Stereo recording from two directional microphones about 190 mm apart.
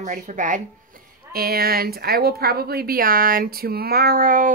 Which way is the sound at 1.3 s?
50° right (ahead or behind).